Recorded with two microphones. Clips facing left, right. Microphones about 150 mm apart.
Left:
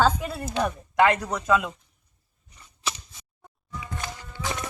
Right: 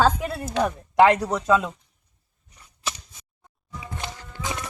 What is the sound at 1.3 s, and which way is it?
Speech, 25° right (ahead or behind).